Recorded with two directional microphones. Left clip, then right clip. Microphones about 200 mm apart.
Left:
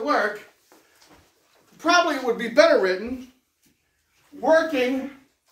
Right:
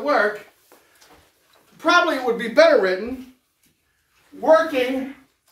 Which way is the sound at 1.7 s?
5° right (ahead or behind).